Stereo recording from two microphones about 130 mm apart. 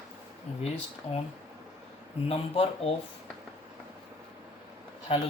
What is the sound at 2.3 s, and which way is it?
Speech, 50° left (ahead or behind).